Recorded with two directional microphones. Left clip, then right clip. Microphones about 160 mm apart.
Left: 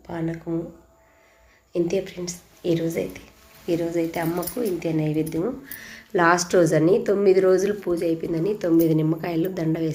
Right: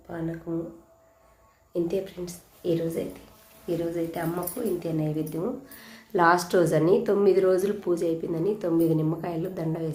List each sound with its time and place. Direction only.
0.1 s speech: 15° left (ahead or behind)
1.7 s speech: 5° left (ahead or behind)
8.3 s speech: 5° left (ahead or behind)